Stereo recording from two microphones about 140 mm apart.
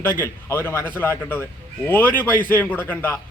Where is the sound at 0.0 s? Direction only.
15° left (ahead or behind).